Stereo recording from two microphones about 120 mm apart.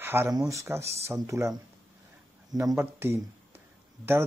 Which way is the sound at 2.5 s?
25° right (ahead or behind).